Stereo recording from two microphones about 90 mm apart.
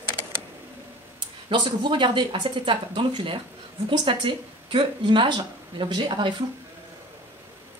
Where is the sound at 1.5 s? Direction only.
60° right (ahead or behind).